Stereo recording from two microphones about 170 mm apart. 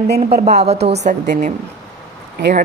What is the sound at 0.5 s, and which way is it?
Speech, 40° right (ahead or behind).